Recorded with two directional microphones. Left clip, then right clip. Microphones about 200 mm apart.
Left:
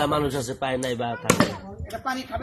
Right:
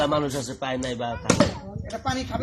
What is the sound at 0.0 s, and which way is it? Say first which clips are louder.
Speech: even; 45° left (ahead or behind).